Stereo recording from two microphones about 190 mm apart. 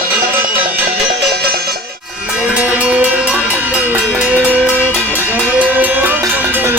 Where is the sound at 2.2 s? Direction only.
5° right (ahead or behind).